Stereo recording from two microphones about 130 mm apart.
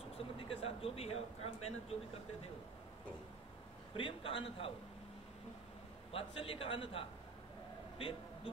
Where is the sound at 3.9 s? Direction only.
40° left (ahead or behind).